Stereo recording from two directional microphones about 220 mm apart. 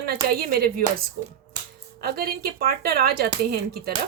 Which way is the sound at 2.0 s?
45° right (ahead or behind).